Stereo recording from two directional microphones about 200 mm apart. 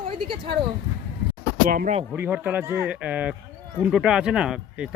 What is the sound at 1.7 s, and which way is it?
Speech, 45° right (ahead or behind).